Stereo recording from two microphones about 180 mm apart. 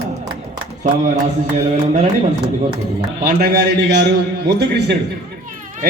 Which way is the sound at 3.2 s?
60° right (ahead or behind).